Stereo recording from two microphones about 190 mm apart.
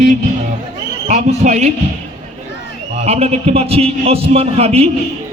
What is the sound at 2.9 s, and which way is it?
A man's voice, 35° right (ahead or behind).